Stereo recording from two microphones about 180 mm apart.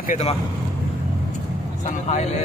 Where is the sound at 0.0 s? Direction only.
40° left (ahead or behind).